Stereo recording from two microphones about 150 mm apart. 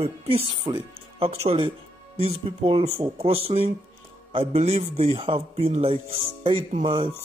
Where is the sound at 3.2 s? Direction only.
40° right (ahead or behind).